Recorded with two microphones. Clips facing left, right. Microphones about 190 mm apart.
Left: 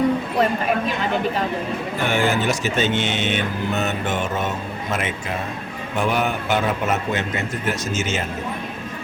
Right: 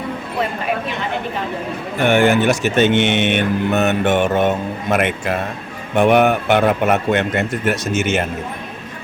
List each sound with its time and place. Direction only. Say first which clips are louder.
2.0 s speech: right 7 dB; 65° right (ahead or behind)